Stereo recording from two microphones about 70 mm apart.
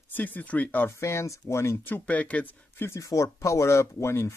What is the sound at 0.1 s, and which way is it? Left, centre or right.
Speech, left.